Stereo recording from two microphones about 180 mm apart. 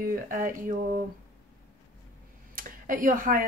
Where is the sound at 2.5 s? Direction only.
50° right (ahead or behind).